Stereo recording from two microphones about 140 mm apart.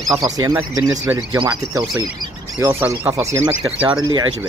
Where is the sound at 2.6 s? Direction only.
20° right (ahead or behind).